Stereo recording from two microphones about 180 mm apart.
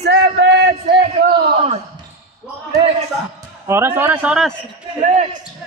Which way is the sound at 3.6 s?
15° right (ahead or behind).